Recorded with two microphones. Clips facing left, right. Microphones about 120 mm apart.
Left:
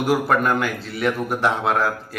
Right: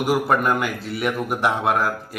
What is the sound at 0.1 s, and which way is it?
Speech, 5° right (ahead or behind).